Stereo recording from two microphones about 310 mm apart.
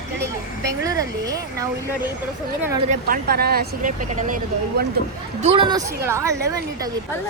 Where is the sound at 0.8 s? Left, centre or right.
Centre.